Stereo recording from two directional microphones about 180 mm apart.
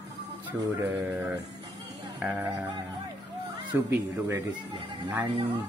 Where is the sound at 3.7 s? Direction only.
15° right (ahead or behind).